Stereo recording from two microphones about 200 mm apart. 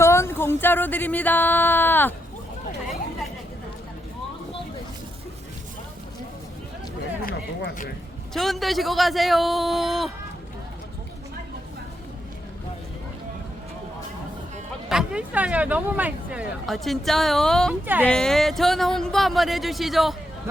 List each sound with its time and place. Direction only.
0.0 s speech: 15° left (ahead or behind)
7.3 s speech: 50° left (ahead or behind)
8.3 s speech: centre (ahead or behind)
14.8 s speech: 5° right (ahead or behind)
17.8 s speech: 10° right (ahead or behind)
18.1 s speech: 5° left (ahead or behind)